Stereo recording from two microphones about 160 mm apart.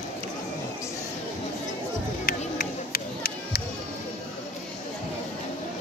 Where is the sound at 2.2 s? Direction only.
70° left (ahead or behind).